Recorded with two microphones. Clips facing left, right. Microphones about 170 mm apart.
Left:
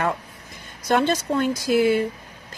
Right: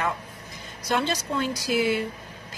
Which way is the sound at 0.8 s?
50° left (ahead or behind).